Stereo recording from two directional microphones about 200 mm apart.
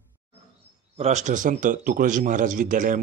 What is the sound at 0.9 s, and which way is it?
A man's voice, 35° right (ahead or behind).